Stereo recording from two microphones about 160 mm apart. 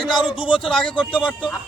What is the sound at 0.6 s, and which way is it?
Speech, 5° left (ahead or behind).